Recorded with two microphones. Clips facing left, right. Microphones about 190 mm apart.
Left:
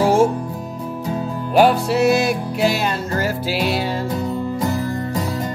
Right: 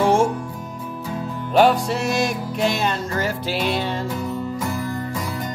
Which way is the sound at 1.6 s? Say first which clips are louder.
Left 3 dB; 5° left (ahead or behind).